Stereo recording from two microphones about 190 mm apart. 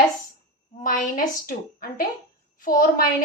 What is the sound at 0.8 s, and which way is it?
A woman's voice, 45° left (ahead or behind).